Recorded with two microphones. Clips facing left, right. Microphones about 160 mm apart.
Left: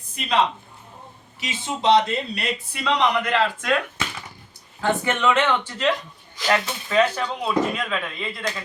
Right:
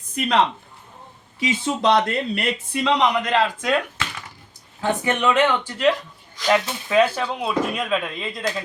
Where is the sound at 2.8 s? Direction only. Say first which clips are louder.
Right 1 dB; 20° right (ahead or behind).